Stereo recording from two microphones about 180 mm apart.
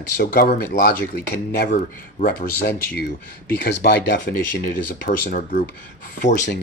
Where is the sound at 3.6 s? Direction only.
65° left (ahead or behind).